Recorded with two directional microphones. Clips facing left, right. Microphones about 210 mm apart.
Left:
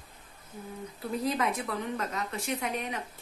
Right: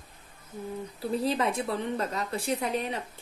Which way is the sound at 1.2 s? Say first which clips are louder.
Right 1 dB; 30° right (ahead or behind).